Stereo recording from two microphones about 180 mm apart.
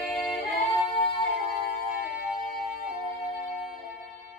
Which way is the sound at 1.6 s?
60° left (ahead or behind).